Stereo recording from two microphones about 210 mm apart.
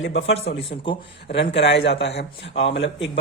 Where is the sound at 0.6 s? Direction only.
25° left (ahead or behind).